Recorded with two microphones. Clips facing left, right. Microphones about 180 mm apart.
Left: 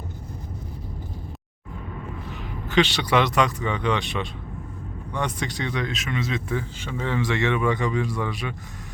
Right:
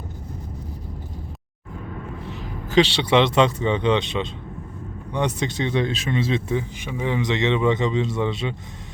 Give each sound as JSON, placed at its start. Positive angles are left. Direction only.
{"t": 2.4, "sound": "speech", "side_deg": -30}